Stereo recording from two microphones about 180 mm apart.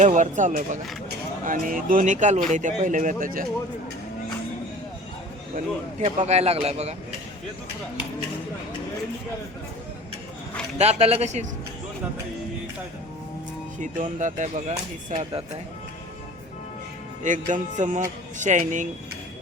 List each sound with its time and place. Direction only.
0.0 s speech: 45° right (ahead or behind)
5.5 s speech: 45° right (ahead or behind)
10.8 s speech: 35° right (ahead or behind)
13.7 s speech: 45° right (ahead or behind)
17.2 s speech: 45° right (ahead or behind)